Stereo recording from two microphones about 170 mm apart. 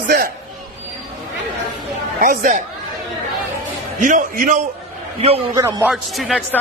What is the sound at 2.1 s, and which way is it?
Speech, 55° right (ahead or behind).